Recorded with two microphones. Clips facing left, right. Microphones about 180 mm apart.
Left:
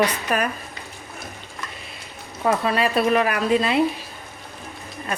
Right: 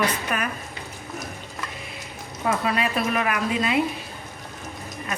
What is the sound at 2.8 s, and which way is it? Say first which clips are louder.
Speech: left 5 dB; 35° left (ahead or behind).